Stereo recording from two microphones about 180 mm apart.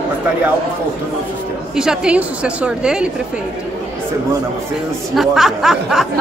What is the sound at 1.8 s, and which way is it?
A woman's voice, 5° right (ahead or behind).